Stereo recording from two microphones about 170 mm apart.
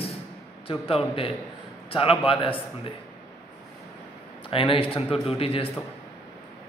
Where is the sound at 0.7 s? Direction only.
35° left (ahead or behind).